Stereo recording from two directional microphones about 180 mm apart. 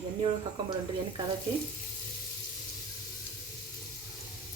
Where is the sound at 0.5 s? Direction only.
25° right (ahead or behind).